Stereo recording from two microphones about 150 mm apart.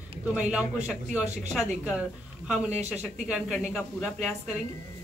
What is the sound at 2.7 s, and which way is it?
Speech, 50° right (ahead or behind).